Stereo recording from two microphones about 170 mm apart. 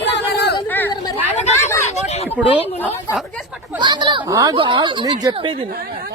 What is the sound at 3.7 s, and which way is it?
Speech, 25° right (ahead or behind).